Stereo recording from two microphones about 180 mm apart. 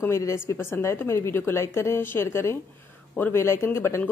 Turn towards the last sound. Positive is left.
turn(degrees=15)  # may be behind; listen again after turning